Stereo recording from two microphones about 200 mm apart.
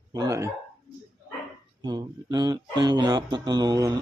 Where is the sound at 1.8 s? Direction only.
20° right (ahead or behind).